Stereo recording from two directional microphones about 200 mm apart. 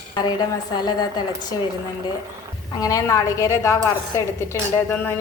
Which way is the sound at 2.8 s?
15° left (ahead or behind).